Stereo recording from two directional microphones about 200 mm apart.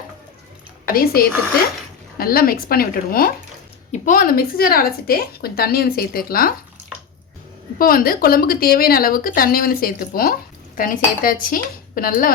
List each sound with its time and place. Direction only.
0.9 s speech: 50° left (ahead or behind)
7.8 s speech: 45° left (ahead or behind)